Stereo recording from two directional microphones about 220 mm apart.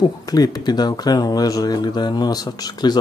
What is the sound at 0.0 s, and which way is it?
A man's voice, 15° left (ahead or behind).